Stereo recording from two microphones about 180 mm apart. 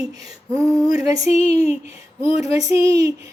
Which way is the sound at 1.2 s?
40° left (ahead or behind).